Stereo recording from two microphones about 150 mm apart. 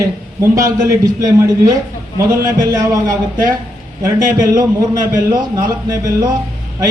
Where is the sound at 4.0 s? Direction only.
25° right (ahead or behind).